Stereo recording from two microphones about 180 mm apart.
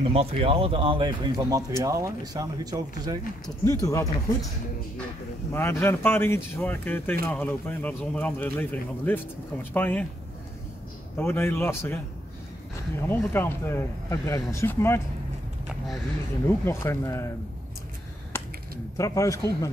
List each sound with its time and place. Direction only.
0.1 s speech: 35° right (ahead or behind)
3.4 s speech: 20° left (ahead or behind)
5.5 s speech: 15° left (ahead or behind)
11.1 s speech: 10° left (ahead or behind)
13.1 s speech: 10° left (ahead or behind)
16.4 s speech: 15° left (ahead or behind)
18.3 s a sound: 15° left (ahead or behind)
18.9 s speech: 20° left (ahead or behind)